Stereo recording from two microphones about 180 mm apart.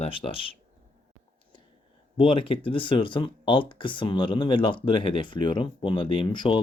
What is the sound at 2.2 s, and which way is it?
Speech, 30° left (ahead or behind).